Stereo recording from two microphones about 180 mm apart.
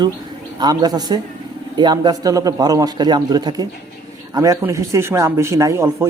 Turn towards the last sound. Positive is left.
turn(degrees=-15)  # may be behind; listen again after turning